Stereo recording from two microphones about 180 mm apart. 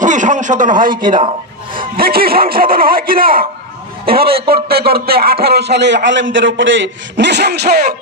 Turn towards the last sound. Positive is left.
turn(degrees=-60)  # may be behind; listen again after turning